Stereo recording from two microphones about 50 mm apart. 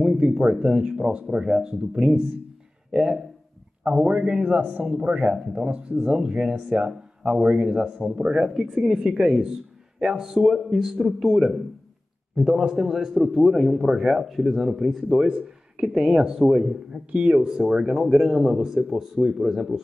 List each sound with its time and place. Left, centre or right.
0.2 s a man's voice: centre
4.0 s a man's voice: right; by 19.8 s centre